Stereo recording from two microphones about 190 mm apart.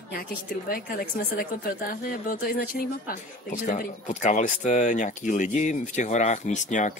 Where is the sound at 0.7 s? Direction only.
50° left (ahead or behind).